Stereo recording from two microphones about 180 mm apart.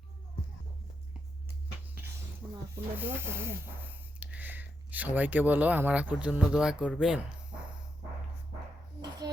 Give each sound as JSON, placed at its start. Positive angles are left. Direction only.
{"t": 2.4, "sound": "snake", "side_deg": -10}
{"t": 2.7, "sound": "speech", "side_deg": -10}
{"t": 9.0, "sound": "a sound", "side_deg": -20}